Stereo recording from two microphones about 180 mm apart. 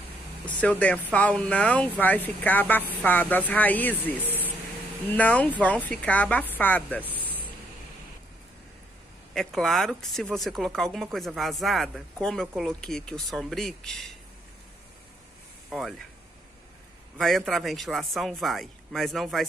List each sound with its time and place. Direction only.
0.6 s speech: 5° left (ahead or behind)
9.3 s speech: centre (ahead or behind)
17.2 s speech: centre (ahead or behind)